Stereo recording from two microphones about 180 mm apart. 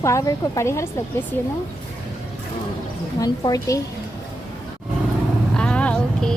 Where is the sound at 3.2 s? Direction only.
20° left (ahead or behind).